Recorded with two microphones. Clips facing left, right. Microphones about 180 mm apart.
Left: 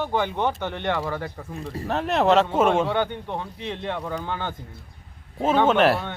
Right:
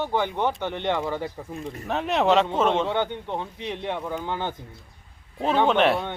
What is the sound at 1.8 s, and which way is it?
Speech, centre (ahead or behind).